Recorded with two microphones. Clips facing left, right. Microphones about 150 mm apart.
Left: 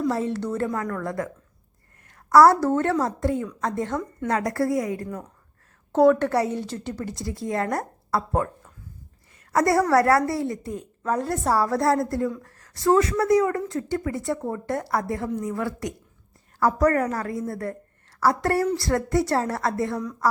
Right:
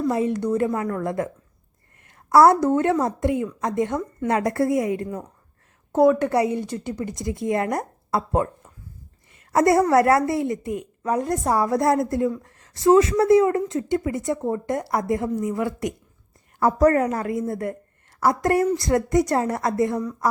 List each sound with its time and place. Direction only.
0.1 s a woman's voice: 15° right (ahead or behind)
5.9 s a woman's voice: 10° right (ahead or behind)